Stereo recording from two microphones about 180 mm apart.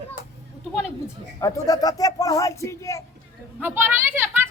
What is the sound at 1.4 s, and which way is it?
Speech, 20° left (ahead or behind).